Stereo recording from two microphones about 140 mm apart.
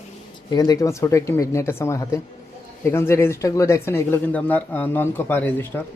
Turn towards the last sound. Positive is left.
turn(degrees=15)  # may be behind; listen again after turning